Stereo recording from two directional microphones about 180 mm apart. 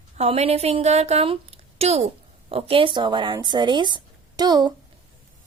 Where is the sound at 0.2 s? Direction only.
35° right (ahead or behind).